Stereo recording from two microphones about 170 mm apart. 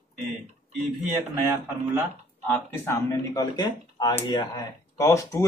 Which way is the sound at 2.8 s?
20° left (ahead or behind).